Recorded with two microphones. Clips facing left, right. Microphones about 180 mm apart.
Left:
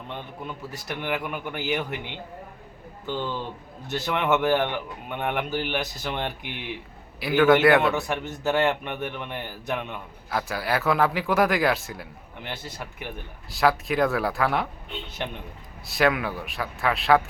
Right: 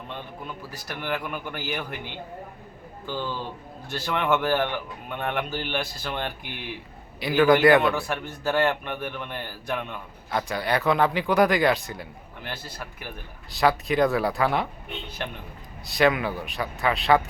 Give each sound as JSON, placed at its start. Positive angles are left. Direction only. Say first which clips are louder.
{"t": 0.1, "sound": "speech", "louder": "left 2 dB", "side_deg": 20}
{"t": 7.2, "sound": "a man's voice", "louder": "even", "side_deg": 0}
{"t": 7.9, "sound": "speech", "louder": "left 1 dB", "side_deg": 20}
{"t": 12.4, "sound": "speech", "louder": "left 1 dB", "side_deg": 20}
{"t": 13.5, "sound": "a man's voice", "louder": "even", "side_deg": 0}
{"t": 15.2, "sound": "speech", "louder": "left 2 dB", "side_deg": 15}
{"t": 15.9, "sound": "a man's voice", "louder": "right 1 dB", "side_deg": 0}